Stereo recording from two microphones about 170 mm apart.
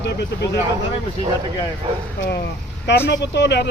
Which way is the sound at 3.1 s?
90° left.